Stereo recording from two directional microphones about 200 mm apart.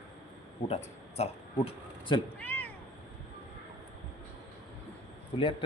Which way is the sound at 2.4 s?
10° left (ahead or behind).